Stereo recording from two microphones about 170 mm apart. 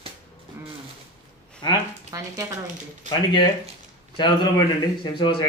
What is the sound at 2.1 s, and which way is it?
Speech, 20° right (ahead or behind).